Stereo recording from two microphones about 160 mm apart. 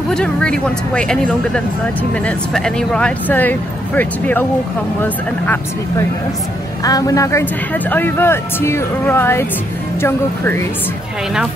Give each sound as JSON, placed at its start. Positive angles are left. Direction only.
{"t": 0.1, "sound": "a man's voice", "side_deg": 5}
{"t": 6.8, "sound": "a man's voice", "side_deg": 20}